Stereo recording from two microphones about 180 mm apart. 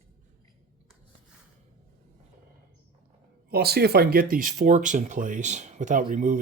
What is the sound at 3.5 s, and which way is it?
Speech, 60° right (ahead or behind).